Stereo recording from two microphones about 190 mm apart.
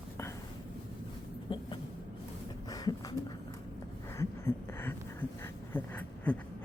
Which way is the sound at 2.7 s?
20° left (ahead or behind).